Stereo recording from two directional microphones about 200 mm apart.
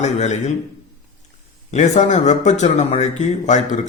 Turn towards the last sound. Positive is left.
turn(degrees=40)  # may be behind; listen again after turning